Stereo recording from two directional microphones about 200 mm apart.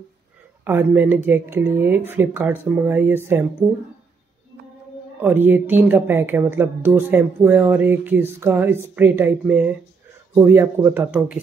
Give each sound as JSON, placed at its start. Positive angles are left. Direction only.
{"t": 0.7, "sound": "speech", "side_deg": -10}
{"t": 5.2, "sound": "speech", "side_deg": -10}